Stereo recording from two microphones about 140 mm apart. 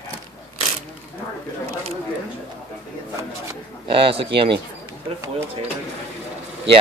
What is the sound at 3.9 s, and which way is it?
Speech, 40° right (ahead or behind).